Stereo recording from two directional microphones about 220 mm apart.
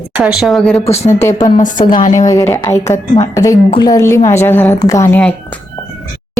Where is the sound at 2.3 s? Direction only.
15° left (ahead or behind).